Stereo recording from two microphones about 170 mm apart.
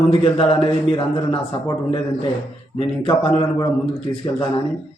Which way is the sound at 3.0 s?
35° left (ahead or behind).